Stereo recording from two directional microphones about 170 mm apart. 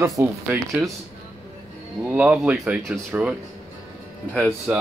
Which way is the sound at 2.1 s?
10° right (ahead or behind).